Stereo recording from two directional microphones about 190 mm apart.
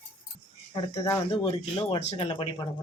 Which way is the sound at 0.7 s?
20° left (ahead or behind).